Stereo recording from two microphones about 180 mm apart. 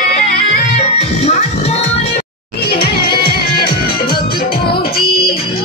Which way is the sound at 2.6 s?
60° left (ahead or behind).